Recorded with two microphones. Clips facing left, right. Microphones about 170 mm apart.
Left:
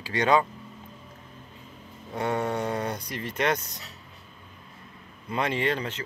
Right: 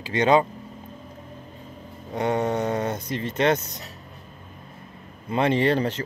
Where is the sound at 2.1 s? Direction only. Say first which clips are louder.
Right 4 dB; 20° right (ahead or behind).